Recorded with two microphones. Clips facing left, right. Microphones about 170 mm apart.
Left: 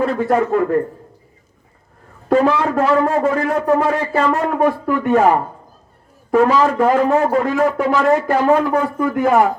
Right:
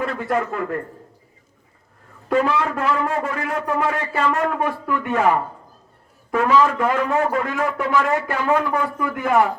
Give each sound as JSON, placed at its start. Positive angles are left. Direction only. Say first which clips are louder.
{"t": 0.0, "sound": "a man's voice", "louder": "left 6 dB", "side_deg": 35}
{"t": 2.3, "sound": "a man's voice", "louder": "left 5 dB", "side_deg": 35}